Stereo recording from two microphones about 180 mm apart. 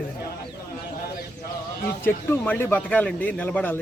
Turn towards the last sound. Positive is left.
turn(degrees=10)  # may be behind; listen again after turning